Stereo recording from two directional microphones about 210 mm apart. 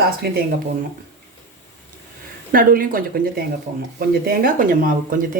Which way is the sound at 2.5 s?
45° right (ahead or behind).